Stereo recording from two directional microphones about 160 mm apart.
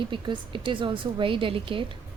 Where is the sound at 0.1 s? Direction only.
30° right (ahead or behind).